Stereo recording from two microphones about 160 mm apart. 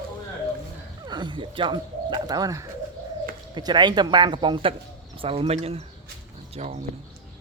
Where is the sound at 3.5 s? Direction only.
30° right (ahead or behind); by 6.7 s 45° right (ahead or behind).